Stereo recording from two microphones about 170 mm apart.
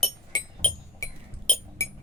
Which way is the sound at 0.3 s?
25° left (ahead or behind).